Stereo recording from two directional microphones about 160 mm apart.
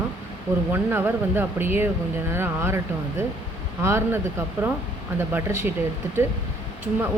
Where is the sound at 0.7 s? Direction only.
15° right (ahead or behind).